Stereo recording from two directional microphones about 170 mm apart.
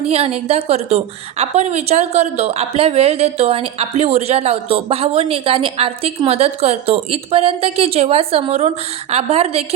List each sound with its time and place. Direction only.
0.0 s a woman's voice: 35° right (ahead or behind)